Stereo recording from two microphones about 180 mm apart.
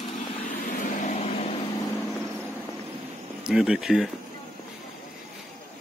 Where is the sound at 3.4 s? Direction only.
5° right (ahead or behind).